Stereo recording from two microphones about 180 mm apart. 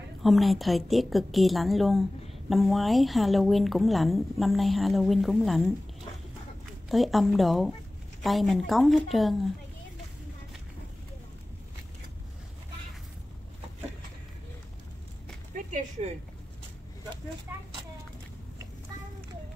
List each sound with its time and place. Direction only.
0.2 s speech: centre (ahead or behind)
6.9 s speech: centre (ahead or behind)
15.5 s a sound: 45° right (ahead or behind)